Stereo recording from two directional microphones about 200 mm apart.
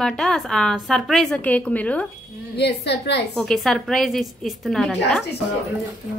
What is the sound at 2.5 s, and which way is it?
Speech, 55° left (ahead or behind).